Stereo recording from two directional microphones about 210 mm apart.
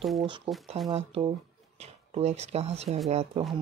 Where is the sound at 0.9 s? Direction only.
25° right (ahead or behind).